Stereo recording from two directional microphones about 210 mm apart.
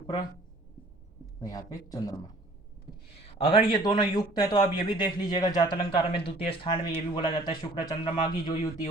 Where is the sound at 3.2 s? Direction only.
25° left (ahead or behind).